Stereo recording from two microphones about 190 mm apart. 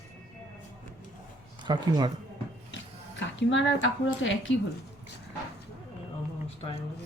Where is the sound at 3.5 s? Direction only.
75° left (ahead or behind).